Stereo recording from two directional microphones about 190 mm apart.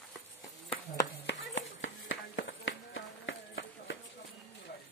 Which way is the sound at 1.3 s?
85° left.